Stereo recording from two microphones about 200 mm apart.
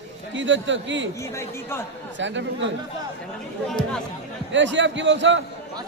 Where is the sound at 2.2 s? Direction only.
65° right (ahead or behind).